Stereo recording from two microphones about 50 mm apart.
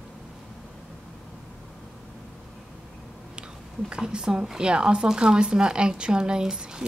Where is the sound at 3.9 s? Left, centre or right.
Centre.